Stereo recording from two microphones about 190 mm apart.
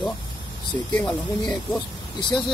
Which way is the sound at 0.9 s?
10° left (ahead or behind).